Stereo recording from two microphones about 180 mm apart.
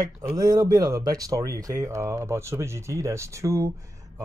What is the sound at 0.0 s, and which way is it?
Speech, 20° right (ahead or behind).